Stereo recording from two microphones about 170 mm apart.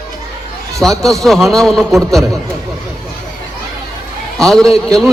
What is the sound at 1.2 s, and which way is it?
A man's voice, centre (ahead or behind).